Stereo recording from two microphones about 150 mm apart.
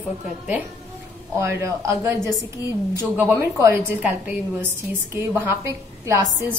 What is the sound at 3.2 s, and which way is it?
A woman's voice, 15° right (ahead or behind).